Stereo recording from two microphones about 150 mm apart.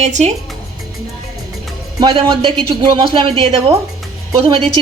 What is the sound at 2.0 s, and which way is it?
Speech, 35° right (ahead or behind).